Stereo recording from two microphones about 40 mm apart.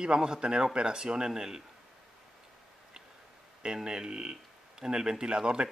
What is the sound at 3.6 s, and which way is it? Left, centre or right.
Speech, centre.